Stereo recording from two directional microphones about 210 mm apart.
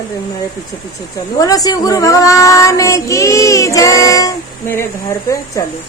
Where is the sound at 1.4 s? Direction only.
15° left (ahead or behind).